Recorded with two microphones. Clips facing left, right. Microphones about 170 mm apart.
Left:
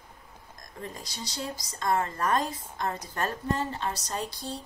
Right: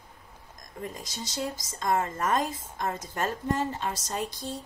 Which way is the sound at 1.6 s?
20° right (ahead or behind).